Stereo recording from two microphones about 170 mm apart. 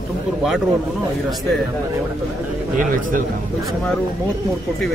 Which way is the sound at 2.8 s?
55° right (ahead or behind).